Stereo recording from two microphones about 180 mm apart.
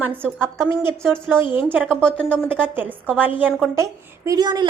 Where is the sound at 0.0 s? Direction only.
10° right (ahead or behind).